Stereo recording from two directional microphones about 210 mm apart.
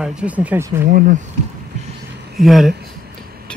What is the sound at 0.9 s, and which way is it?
Speech, 35° right (ahead or behind).